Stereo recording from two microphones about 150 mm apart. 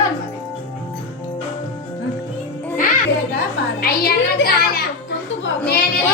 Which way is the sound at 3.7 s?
90° left.